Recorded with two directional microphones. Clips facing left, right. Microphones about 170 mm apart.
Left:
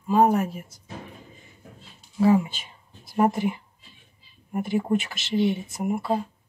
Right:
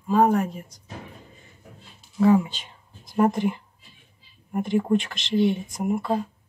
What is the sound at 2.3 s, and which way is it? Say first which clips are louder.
Speech: right 1 dB; 5° left (ahead or behind).